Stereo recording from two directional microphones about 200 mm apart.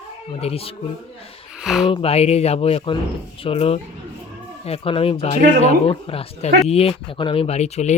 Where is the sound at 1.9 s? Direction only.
30° left (ahead or behind).